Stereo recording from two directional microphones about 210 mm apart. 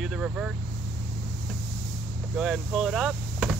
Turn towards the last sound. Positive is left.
turn(degrees=0)  # may be behind; listen again after turning